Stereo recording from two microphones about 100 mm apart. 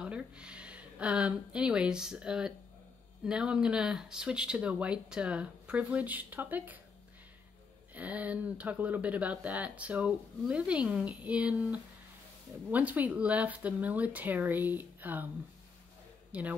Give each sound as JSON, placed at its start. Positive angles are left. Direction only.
{"t": 0.0, "sound": "speech", "side_deg": -10}
{"t": 7.9, "sound": "speech", "side_deg": -15}
{"t": 16.3, "sound": "a sound", "side_deg": -15}